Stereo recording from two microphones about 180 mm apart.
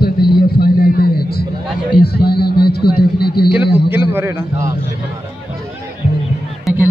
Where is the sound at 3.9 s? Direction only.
10° right (ahead or behind).